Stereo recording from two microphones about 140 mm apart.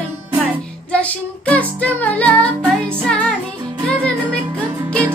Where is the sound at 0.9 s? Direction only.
10° left (ahead or behind).